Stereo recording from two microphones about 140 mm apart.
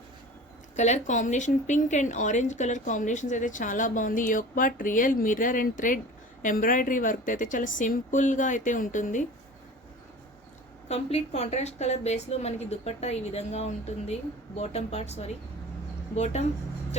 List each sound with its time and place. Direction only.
0.8 s a woman's voice: 60° left (ahead or behind)
10.8 s a woman's voice: 50° left (ahead or behind)